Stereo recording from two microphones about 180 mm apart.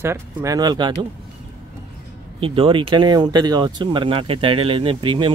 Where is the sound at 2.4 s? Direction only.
30° right (ahead or behind).